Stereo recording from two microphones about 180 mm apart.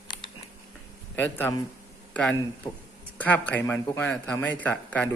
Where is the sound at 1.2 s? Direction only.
10° left (ahead or behind).